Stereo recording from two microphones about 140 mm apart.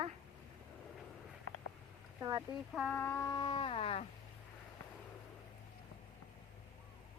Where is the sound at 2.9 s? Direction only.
15° left (ahead or behind).